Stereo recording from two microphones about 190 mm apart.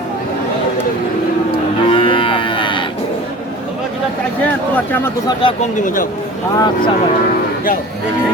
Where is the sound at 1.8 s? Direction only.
25° left (ahead or behind).